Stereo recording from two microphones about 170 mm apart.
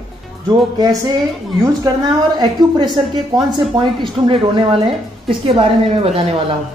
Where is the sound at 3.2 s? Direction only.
20° right (ahead or behind).